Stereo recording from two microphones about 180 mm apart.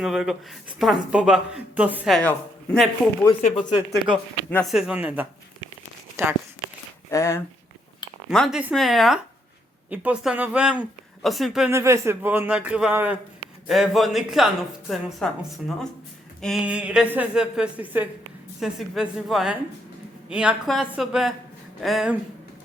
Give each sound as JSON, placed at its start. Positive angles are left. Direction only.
{"t": 0.0, "sound": "a woman's voice", "side_deg": 0}
{"t": 2.1, "sound": "a man's voice", "side_deg": 5}
{"t": 3.4, "sound": "speech", "side_deg": 40}
{"t": 4.4, "sound": "speech", "side_deg": 10}
{"t": 4.7, "sound": "a man's voice", "side_deg": -5}
{"t": 7.1, "sound": "speech", "side_deg": 15}
{"t": 8.3, "sound": "a woman's voice", "side_deg": 0}
{"t": 11.7, "sound": "a man's voice", "side_deg": -15}